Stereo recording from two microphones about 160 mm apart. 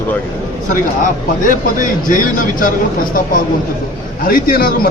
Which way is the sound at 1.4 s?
55° left (ahead or behind).